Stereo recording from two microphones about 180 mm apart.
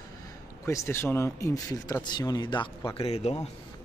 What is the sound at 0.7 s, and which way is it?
A man's voice, 15° left (ahead or behind).